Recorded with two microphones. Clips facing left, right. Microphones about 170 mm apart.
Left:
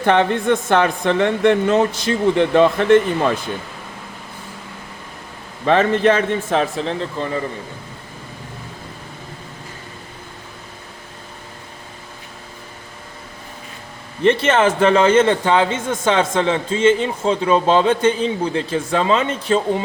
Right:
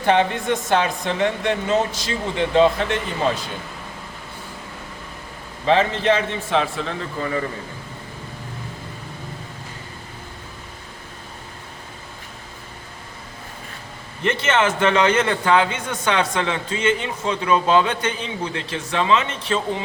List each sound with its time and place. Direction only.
0.0 s speech: 55° left (ahead or behind)
5.6 s a man's voice: 50° left (ahead or behind); by 7.3 s 30° left (ahead or behind)
14.3 s a man's voice: 35° left (ahead or behind)